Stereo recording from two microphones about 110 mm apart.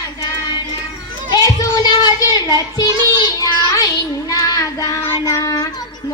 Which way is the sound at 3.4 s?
30° left (ahead or behind).